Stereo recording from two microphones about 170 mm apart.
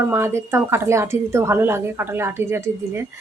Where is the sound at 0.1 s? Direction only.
15° right (ahead or behind).